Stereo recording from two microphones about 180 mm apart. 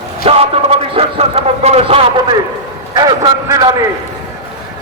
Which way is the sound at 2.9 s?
20° right (ahead or behind).